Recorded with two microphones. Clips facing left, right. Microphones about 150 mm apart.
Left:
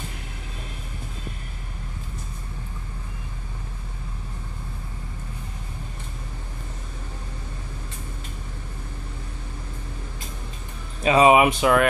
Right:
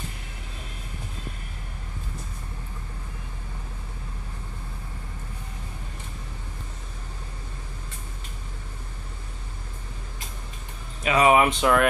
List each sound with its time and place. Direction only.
11.1 s speech: 25° left (ahead or behind)
11.3 s speech: 10° left (ahead or behind)